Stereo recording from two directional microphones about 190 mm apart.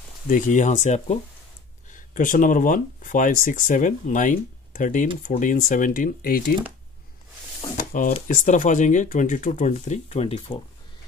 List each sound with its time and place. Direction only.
0.3 s speech: 40° left (ahead or behind)
8.1 s speech: 40° left (ahead or behind)